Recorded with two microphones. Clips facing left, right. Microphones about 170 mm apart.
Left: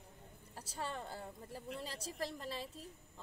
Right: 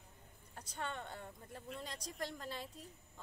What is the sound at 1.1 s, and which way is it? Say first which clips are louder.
Speech: left 3 dB; 30° left (ahead or behind).